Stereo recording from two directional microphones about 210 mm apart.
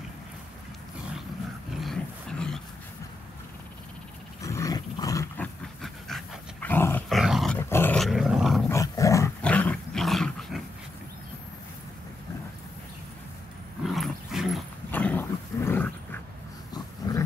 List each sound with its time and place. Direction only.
1.7 s a sound: centre (ahead or behind)
4.4 s roar: 15° left (ahead or behind)
5.8 s dog: centre (ahead or behind)
7.5 s dog: 10° left (ahead or behind)
8.6 s dog: 15° left (ahead or behind)
13.8 s dog: centre (ahead or behind)
16.7 s a sound: 20° left (ahead or behind)